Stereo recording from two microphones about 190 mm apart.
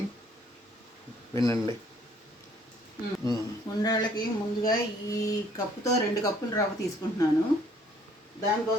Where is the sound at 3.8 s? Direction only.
20° left (ahead or behind).